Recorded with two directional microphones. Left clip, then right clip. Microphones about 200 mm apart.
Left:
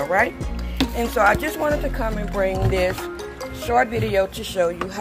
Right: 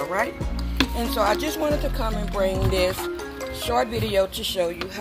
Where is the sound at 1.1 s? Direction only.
15° right (ahead or behind).